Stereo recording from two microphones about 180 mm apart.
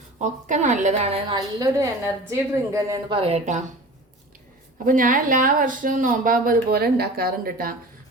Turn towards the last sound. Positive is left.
turn(degrees=-55)  # may be behind; listen again after turning